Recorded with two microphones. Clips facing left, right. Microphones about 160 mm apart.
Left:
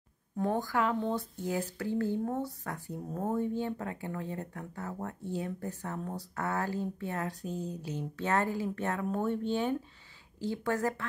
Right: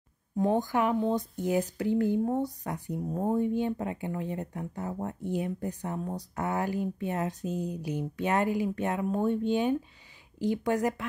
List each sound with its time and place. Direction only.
0.4 s speech: 20° right (ahead or behind)